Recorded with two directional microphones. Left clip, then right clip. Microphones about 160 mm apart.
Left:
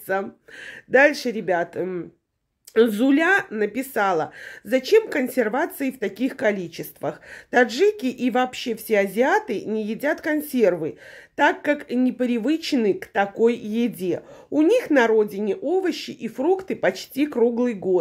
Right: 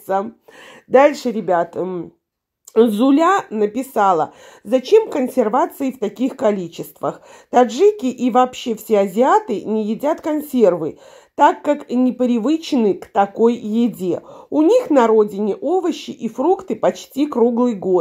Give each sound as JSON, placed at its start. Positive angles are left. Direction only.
{"t": 0.9, "sound": "speech", "side_deg": -25}